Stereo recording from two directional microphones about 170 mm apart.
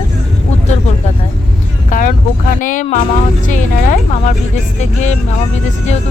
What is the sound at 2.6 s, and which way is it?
Speech, 50° left (ahead or behind).